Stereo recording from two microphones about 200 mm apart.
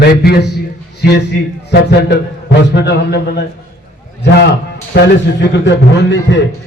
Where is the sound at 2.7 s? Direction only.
55° left (ahead or behind).